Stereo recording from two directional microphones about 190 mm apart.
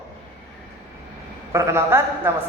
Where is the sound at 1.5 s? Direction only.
15° right (ahead or behind).